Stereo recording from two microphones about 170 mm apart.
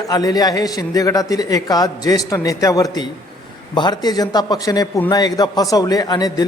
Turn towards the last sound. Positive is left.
turn(degrees=25)  # may be behind; listen again after turning